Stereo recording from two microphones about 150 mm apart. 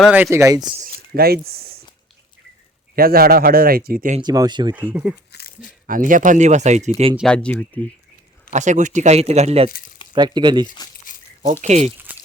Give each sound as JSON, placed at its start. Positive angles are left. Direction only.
{"t": 0.1, "sound": "speech", "side_deg": -15}
{"t": 1.1, "sound": "speech", "side_deg": -90}
{"t": 2.9, "sound": "speech", "side_deg": -80}
{"t": 4.2, "sound": "speech", "side_deg": -30}
{"t": 4.7, "sound": "speech", "side_deg": -10}
{"t": 5.3, "sound": "a sound", "side_deg": 90}
{"t": 5.8, "sound": "speech", "side_deg": -65}
{"t": 7.3, "sound": "speech", "side_deg": 5}
{"t": 8.5, "sound": "speech", "side_deg": -55}
{"t": 10.1, "sound": "speech", "side_deg": -30}
{"t": 11.1, "sound": "a sound", "side_deg": 60}
{"t": 11.6, "sound": "speech", "side_deg": -50}
{"t": 12.1, "sound": "a sound", "side_deg": -10}